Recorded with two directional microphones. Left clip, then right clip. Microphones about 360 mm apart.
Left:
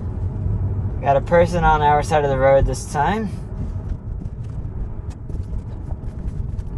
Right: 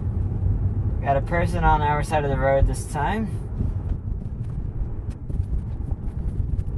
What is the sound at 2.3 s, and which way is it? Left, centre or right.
Speech, left.